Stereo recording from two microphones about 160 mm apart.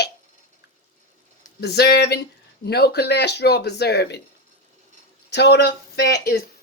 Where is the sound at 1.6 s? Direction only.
90° left.